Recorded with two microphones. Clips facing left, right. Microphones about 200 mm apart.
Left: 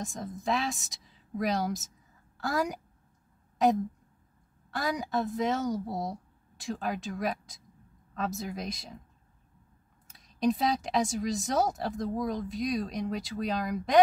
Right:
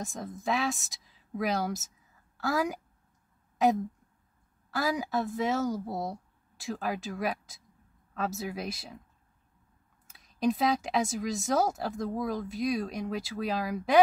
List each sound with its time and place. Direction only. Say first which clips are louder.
0.0 s speech: even; centre (ahead or behind)
10.0 s speech: left 1 dB; centre (ahead or behind)